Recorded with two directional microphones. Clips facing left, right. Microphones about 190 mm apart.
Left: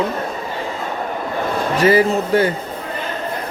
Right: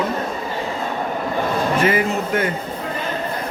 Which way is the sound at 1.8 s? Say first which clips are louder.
Left 5 dB; 35° left (ahead or behind).